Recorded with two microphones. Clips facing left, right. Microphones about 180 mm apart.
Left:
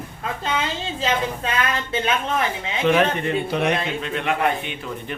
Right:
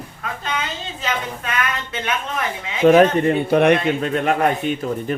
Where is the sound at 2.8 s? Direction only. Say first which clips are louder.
Right 7 dB; 40° right (ahead or behind).